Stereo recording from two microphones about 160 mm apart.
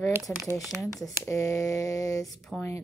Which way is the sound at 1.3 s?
20° left (ahead or behind).